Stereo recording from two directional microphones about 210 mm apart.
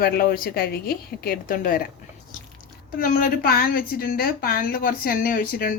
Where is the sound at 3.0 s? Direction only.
40° left (ahead or behind).